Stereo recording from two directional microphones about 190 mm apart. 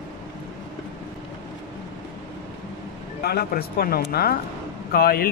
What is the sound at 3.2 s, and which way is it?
Speech, 55° left (ahead or behind).